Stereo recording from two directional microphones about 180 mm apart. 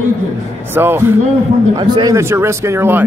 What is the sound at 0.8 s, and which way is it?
Speech, 10° right (ahead or behind).